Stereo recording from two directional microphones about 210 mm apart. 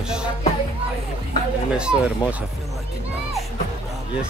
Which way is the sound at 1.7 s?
5° right (ahead or behind).